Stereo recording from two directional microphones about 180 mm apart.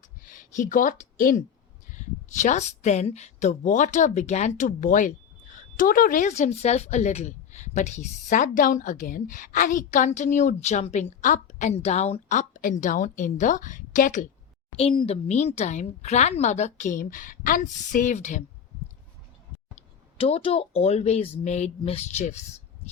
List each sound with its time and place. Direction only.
0.3 s a woman's voice: 45° left (ahead or behind)
14.8 s speech: 30° left (ahead or behind)
19.7 s speech: 35° left (ahead or behind)